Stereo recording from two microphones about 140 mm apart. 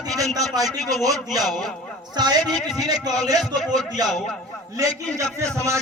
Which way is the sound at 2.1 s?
30° right (ahead or behind).